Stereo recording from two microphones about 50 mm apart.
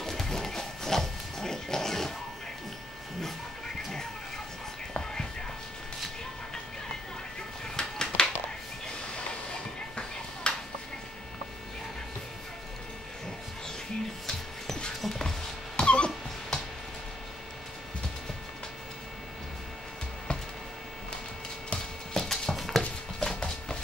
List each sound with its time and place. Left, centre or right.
0.0 s a sound: centre
4.9 s whispering: centre
7.6 s music: centre
10.4 s a sound: centre
14.2 s music: centre
15.7 s dog: left
22.1 s music: centre